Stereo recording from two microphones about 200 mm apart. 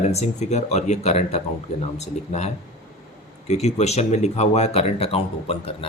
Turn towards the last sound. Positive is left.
turn(degrees=30)  # may be behind; listen again after turning